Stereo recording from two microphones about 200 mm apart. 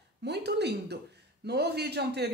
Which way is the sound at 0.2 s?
55° right (ahead or behind).